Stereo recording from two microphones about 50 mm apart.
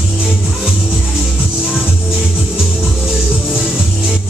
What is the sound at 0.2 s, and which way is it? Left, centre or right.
Music, centre.